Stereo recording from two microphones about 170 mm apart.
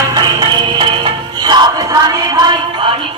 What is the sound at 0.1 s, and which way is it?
Music, 25° right (ahead or behind).